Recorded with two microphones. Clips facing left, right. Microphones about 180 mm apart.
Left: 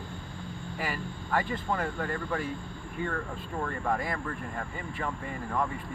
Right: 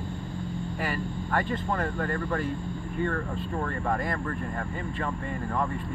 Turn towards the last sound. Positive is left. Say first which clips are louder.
# right 2 dB
turn(degrees=0)  # may be behind; listen again after turning